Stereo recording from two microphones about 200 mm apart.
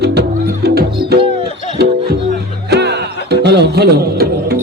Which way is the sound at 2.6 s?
55° right (ahead or behind).